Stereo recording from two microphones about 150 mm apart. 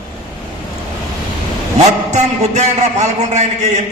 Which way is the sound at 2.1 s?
50° right (ahead or behind).